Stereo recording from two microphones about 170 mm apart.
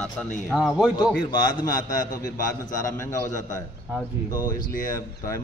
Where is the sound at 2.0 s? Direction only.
20° left (ahead or behind).